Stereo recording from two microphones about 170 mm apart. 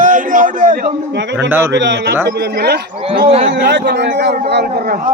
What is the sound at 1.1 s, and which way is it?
Speech, 90° right.